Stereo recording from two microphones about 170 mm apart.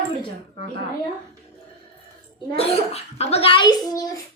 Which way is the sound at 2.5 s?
35° left (ahead or behind).